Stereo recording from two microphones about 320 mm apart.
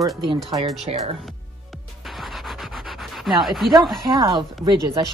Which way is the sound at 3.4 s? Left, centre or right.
Centre.